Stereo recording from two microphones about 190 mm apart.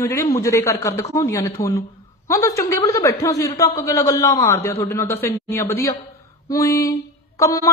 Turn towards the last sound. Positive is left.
turn(degrees=15)  # may be behind; listen again after turning